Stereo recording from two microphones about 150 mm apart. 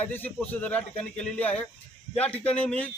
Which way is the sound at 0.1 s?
10° left (ahead or behind).